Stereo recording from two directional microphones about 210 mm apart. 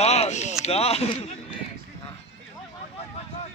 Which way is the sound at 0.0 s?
30° left (ahead or behind).